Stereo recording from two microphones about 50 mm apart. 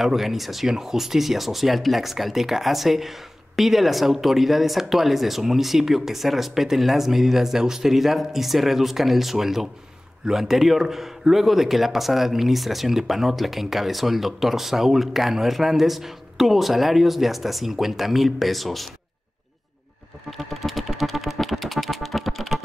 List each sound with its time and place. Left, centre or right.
0.0 s speech: centre
20.2 s music: centre